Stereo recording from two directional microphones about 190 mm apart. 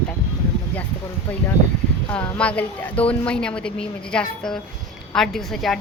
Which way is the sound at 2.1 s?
5° left (ahead or behind).